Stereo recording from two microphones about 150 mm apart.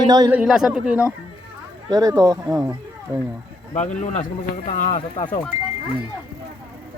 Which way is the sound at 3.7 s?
50° left (ahead or behind).